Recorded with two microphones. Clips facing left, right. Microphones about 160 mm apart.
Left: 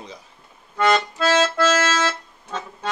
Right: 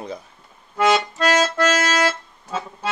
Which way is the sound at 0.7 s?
10° right (ahead or behind).